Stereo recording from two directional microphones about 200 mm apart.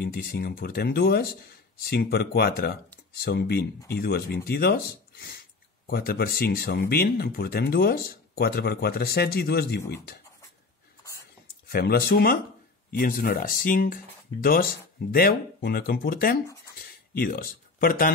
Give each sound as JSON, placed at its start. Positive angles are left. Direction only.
{"t": 0.0, "sound": "speech", "side_deg": 50}
{"t": 11.7, "sound": "speech", "side_deg": 50}